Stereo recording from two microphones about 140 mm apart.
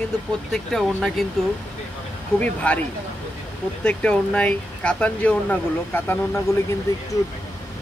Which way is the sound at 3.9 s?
10° left (ahead or behind).